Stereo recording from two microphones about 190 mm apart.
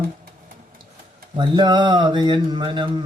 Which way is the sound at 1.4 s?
25° right (ahead or behind).